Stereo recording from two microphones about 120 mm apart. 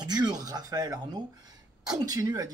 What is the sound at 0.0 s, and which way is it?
Speech, 35° right (ahead or behind).